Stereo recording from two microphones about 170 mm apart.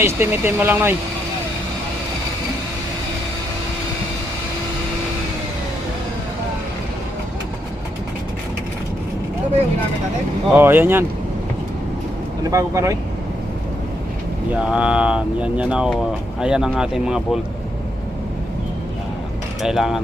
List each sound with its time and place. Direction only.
0.0 s speech: 15° right (ahead or behind)
10.5 s speech: 10° right (ahead or behind)
12.4 s speech: 20° right (ahead or behind)
14.5 s speech: 5° right (ahead or behind)
19.6 s speech: 5° right (ahead or behind)